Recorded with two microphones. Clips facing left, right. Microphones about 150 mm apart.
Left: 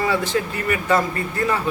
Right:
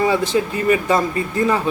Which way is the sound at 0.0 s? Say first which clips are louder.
Right 4 dB; 15° right (ahead or behind).